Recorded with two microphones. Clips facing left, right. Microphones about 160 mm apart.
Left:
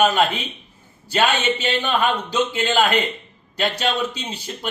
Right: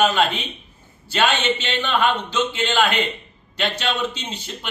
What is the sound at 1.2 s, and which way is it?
Speech, 10° left (ahead or behind).